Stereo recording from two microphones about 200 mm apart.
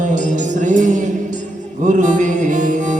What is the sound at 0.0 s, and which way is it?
Music, 40° right (ahead or behind).